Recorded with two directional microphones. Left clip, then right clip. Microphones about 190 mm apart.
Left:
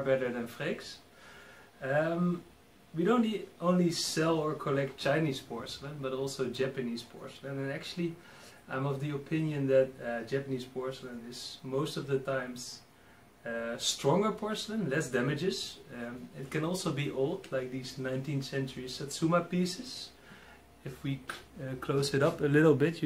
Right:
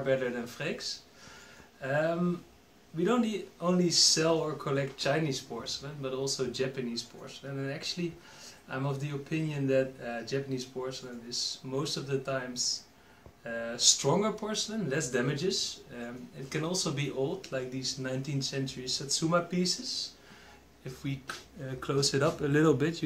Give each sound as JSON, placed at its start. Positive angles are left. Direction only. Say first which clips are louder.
{"t": 0.0, "sound": "speech", "louder": "even", "side_deg": 0}
{"t": 20.8, "sound": "speech", "louder": "even", "side_deg": 5}